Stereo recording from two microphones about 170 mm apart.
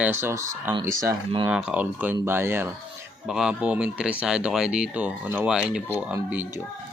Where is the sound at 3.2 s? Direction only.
5° right (ahead or behind).